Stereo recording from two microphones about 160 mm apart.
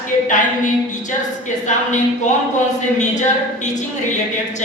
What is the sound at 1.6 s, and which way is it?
A woman's voice, 50° left (ahead or behind).